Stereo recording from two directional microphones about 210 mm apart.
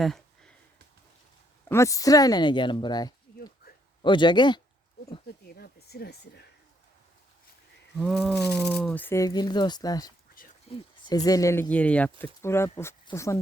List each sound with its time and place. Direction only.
0.0 s a sound: centre (ahead or behind)
1.6 s speech: 15° left (ahead or behind)
5.5 s speech: 50° left (ahead or behind)
7.9 s speech: centre (ahead or behind)